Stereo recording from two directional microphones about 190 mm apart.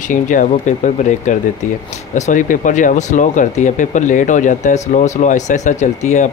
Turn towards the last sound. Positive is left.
turn(degrees=40)  # may be behind; listen again after turning